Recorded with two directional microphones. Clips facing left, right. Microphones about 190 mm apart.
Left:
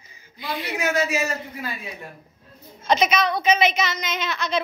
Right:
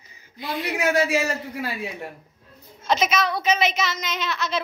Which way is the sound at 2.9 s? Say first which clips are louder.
Left 2 dB; centre (ahead or behind).